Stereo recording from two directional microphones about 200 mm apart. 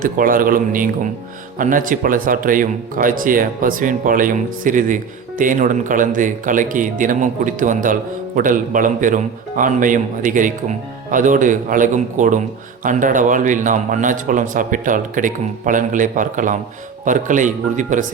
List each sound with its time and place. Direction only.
0.0 s a man's voice: 45° right (ahead or behind)